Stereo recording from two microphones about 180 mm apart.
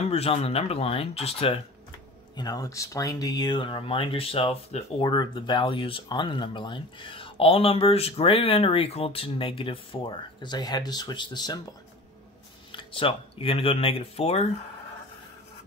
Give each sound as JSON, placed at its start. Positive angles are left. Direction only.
{"t": 0.0, "sound": "speech", "side_deg": 35}
{"t": 2.3, "sound": "speech", "side_deg": 20}
{"t": 12.7, "sound": "speech", "side_deg": 30}